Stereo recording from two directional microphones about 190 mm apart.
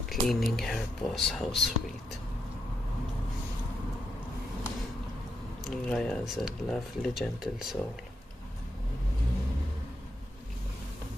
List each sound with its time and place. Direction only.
0.1 s speech: centre (ahead or behind)
5.7 s speech: centre (ahead or behind)